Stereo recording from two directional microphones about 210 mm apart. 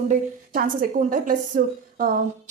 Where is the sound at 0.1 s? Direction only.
40° right (ahead or behind).